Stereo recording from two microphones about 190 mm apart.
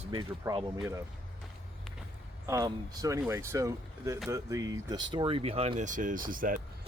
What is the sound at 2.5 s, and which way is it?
Speech, 20° right (ahead or behind).